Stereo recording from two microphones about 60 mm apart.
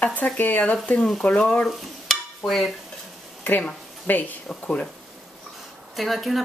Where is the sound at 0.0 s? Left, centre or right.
Left.